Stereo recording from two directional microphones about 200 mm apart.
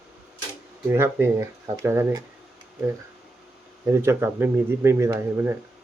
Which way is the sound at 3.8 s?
15° right (ahead or behind).